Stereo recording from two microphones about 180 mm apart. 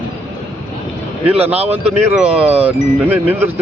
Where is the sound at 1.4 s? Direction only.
35° right (ahead or behind).